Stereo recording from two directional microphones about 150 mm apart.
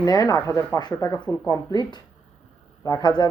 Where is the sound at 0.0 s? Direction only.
25° left (ahead or behind).